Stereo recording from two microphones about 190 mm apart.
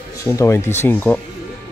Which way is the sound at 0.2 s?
15° left (ahead or behind).